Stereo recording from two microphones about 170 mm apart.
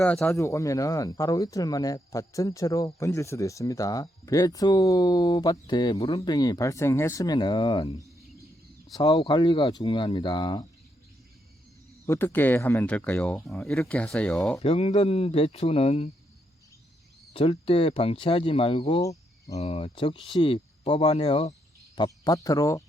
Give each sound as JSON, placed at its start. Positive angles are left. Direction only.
{"t": 0.0, "sound": "speech", "side_deg": 10}
{"t": 12.0, "sound": "speech", "side_deg": 15}
{"t": 14.6, "sound": "speech", "side_deg": 35}
{"t": 17.3, "sound": "speech", "side_deg": 35}